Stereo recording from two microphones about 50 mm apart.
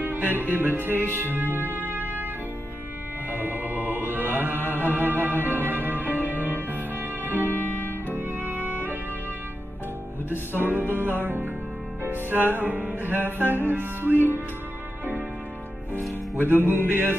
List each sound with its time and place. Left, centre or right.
0.0 s music: right
3.3 s music: right
6.1 s music: left
6.7 s music: right
7.4 s music: left
8.1 s music: right
10.3 s music: right
16.3 s music: right
16.6 s mantra: left